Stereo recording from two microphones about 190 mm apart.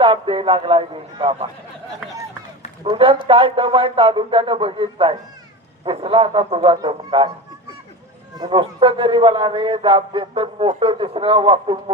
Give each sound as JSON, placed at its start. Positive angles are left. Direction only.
{"t": 0.0, "sound": "a man's voice", "side_deg": -30}
{"t": 2.8, "sound": "a man's voice", "side_deg": -30}
{"t": 8.4, "sound": "a man's voice", "side_deg": -25}